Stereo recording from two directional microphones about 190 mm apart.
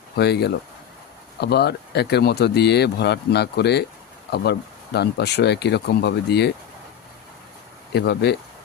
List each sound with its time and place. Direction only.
0.2 s speech: 60° left (ahead or behind)
4.9 s speech: 60° left (ahead or behind)
7.9 s speech: 60° left (ahead or behind)